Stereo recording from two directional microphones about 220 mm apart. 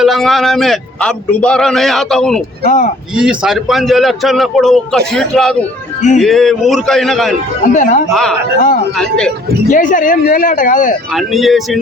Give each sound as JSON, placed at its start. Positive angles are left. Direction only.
{"t": 0.0, "sound": "speech", "side_deg": 0}
{"t": 2.6, "sound": "speech", "side_deg": 35}
{"t": 3.2, "sound": "speech", "side_deg": -5}
{"t": 7.7, "sound": "speech", "side_deg": 35}
{"t": 8.1, "sound": "speech", "side_deg": 0}
{"t": 9.6, "sound": "speech", "side_deg": 35}
{"t": 11.1, "sound": "speech", "side_deg": 0}